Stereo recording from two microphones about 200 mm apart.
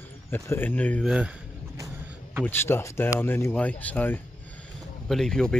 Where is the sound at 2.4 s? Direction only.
10° left (ahead or behind).